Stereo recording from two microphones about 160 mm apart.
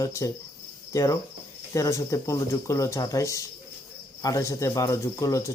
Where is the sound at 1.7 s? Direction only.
20° left (ahead or behind).